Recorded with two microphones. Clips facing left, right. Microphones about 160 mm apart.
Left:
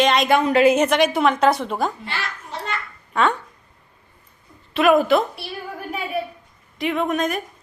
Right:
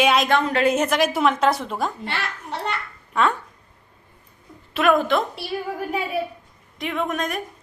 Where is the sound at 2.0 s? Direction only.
65° right (ahead or behind).